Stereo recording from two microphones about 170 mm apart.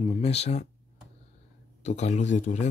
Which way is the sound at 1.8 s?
40° left (ahead or behind).